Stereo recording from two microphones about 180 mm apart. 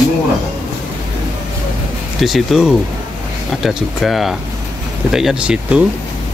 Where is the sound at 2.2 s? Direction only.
Centre (ahead or behind).